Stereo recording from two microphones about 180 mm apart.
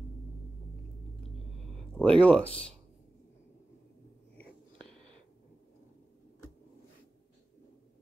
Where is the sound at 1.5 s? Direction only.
5° left (ahead or behind).